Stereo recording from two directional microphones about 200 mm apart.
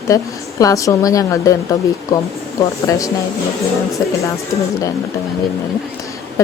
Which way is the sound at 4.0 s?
15° left (ahead or behind).